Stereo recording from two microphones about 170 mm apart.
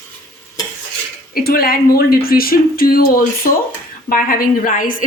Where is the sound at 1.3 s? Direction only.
60° left (ahead or behind).